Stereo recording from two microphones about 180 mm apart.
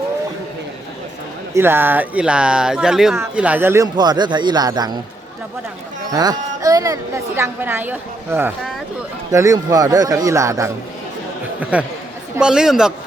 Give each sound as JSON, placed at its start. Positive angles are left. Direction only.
{"t": 1.5, "sound": "a woman's voice", "side_deg": -10}
{"t": 3.9, "sound": "a man's voice", "side_deg": -25}
{"t": 6.1, "sound": "a woman's voice", "side_deg": -20}